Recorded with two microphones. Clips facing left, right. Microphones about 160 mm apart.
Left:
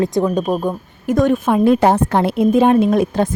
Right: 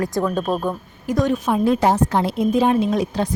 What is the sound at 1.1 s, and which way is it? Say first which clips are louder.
A woman's voice: left 5 dB; 55° left (ahead or behind).